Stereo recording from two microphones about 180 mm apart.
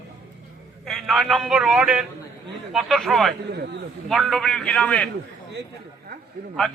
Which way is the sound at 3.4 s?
65° right (ahead or behind).